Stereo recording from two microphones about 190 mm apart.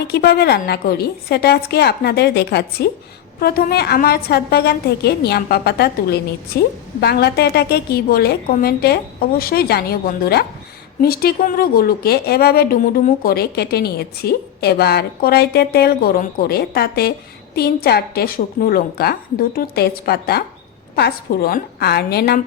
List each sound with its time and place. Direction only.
0.1 s a woman's voice: 55° left (ahead or behind)